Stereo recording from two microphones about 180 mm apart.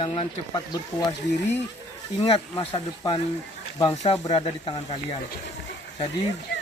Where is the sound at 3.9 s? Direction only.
40° left (ahead or behind).